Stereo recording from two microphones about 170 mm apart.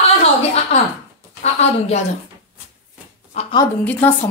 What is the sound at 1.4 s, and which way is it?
Speech, 40° left (ahead or behind).